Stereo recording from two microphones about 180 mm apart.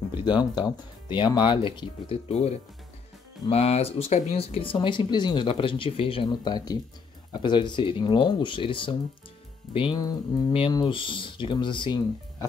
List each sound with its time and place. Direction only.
0.1 s speech: 25° left (ahead or behind)